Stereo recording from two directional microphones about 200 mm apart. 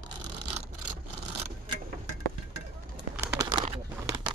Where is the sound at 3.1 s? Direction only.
20° right (ahead or behind).